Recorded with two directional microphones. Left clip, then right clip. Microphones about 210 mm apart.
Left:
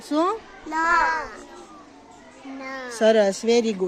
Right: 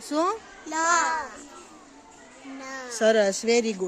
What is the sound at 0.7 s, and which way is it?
Speech, 20° right (ahead or behind).